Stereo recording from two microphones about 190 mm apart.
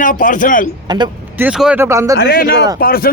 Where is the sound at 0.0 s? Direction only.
45° left (ahead or behind).